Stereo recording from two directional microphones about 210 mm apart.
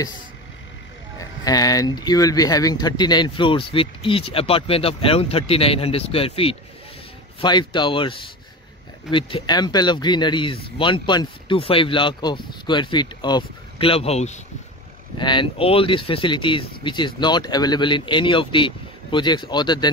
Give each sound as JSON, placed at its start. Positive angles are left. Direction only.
{"t": 1.4, "sound": "speech", "side_deg": 15}